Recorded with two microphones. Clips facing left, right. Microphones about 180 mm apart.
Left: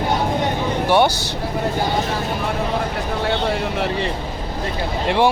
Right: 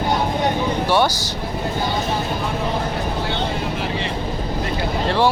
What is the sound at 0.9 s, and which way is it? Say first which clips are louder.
Speech: left 3 dB; 20° left (ahead or behind).